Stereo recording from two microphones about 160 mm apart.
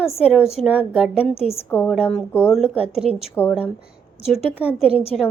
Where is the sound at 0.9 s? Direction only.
5° right (ahead or behind).